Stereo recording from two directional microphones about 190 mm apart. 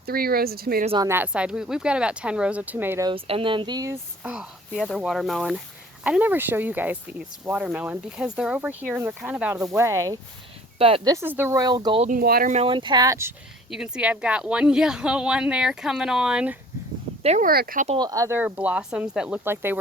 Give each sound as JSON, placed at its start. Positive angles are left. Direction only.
{"t": 0.0, "sound": "speech", "side_deg": -55}
{"t": 1.0, "sound": "a woman's voice", "side_deg": -10}
{"t": 3.1, "sound": "speech", "side_deg": -30}
{"t": 4.2, "sound": "speech", "side_deg": -5}
{"t": 10.8, "sound": "speech", "side_deg": -30}
{"t": 11.1, "sound": "speech", "side_deg": -10}
{"t": 12.0, "sound": "speech", "side_deg": -50}
{"t": 12.5, "sound": "speech", "side_deg": -25}
{"t": 13.7, "sound": "a woman's voice", "side_deg": -5}
{"t": 17.2, "sound": "speech", "side_deg": -40}
{"t": 17.5, "sound": "speech", "side_deg": -50}
{"t": 17.8, "sound": "speech", "side_deg": -25}